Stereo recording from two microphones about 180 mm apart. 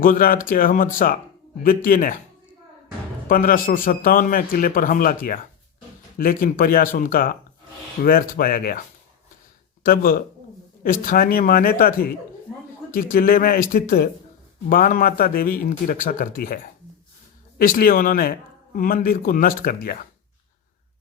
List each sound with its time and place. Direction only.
0.0 s a man's voice: 50° left (ahead or behind)
3.2 s a man's voice: 50° left (ahead or behind)
9.8 s a man's voice: 55° left (ahead or behind)
17.6 s a man's voice: 50° left (ahead or behind)